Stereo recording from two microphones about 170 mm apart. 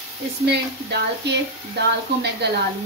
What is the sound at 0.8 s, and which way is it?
A woman's voice, 80° right.